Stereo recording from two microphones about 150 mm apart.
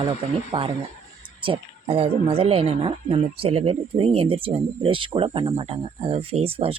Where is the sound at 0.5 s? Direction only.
35° right (ahead or behind).